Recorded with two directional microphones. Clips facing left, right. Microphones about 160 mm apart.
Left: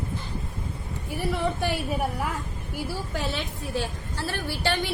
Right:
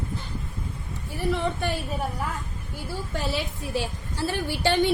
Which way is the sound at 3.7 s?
15° right (ahead or behind).